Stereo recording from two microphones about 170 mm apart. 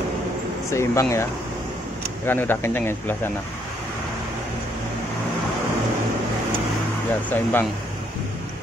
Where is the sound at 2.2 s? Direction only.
10° left (ahead or behind).